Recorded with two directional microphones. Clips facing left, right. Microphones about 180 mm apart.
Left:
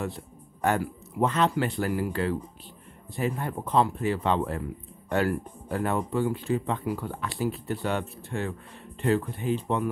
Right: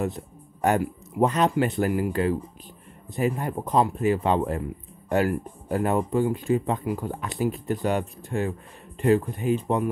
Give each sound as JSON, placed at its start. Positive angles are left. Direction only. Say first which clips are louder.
{"t": 0.0, "sound": "speech", "louder": "right 5 dB", "side_deg": -15}